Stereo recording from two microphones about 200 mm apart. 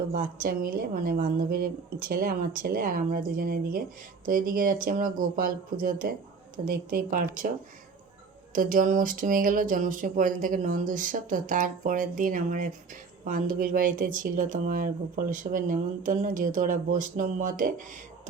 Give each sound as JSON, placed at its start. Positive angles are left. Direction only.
{"t": 0.1, "sound": "speech", "side_deg": -45}
{"t": 8.5, "sound": "speech", "side_deg": -40}